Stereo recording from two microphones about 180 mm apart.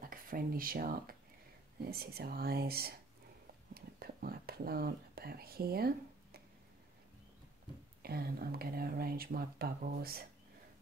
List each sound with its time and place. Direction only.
0.0 s speech: 50° right (ahead or behind)
3.7 s whispering: 55° right (ahead or behind)
8.0 s speech: 60° right (ahead or behind)